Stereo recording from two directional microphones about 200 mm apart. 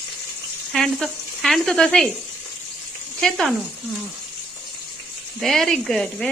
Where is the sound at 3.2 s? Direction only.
Centre (ahead or behind).